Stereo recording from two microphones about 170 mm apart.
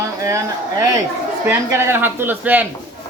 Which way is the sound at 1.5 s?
15° right (ahead or behind).